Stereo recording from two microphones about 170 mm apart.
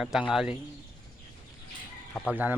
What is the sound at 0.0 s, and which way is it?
Speech, 5° right (ahead or behind).